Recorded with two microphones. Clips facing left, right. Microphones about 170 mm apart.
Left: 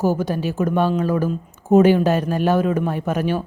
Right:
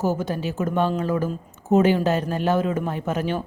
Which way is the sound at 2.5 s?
20° right (ahead or behind).